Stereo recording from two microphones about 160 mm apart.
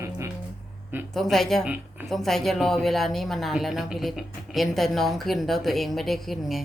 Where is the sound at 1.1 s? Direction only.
Centre (ahead or behind).